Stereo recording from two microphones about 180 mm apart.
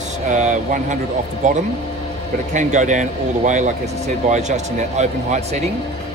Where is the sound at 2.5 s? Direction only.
40° right (ahead or behind).